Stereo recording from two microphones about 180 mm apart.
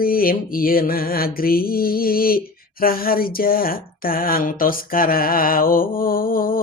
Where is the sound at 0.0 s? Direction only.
55° left (ahead or behind).